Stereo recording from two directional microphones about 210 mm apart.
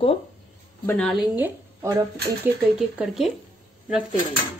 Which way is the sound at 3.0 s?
Centre (ahead or behind).